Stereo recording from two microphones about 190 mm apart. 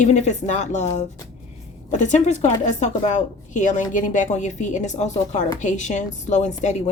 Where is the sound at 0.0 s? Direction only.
40° left (ahead or behind).